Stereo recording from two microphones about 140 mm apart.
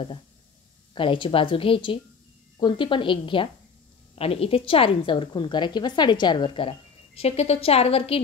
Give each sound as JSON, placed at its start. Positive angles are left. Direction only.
{"t": 0.9, "sound": "a woman's voice", "side_deg": 35}
{"t": 7.2, "sound": "a woman's voice", "side_deg": 50}